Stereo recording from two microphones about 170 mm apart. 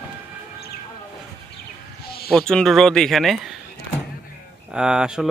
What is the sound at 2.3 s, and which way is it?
Speech, 5° left (ahead or behind).